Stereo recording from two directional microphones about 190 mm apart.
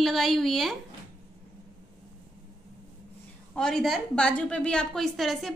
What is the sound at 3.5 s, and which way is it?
A woman's voice, 5° left (ahead or behind).